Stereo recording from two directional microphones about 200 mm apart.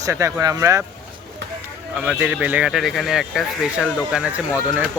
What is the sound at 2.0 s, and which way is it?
Speech, 5° right (ahead or behind).